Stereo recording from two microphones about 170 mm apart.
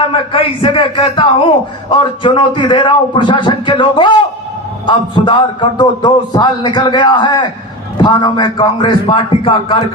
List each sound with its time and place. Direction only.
0.1 s a man's voice: 30° left (ahead or behind)